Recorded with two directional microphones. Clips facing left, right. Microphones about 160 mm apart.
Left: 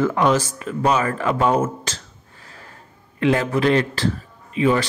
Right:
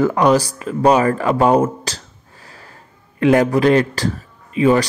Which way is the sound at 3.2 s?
40° right (ahead or behind).